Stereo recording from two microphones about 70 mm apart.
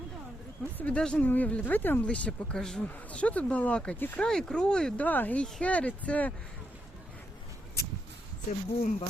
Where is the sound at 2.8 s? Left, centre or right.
Left.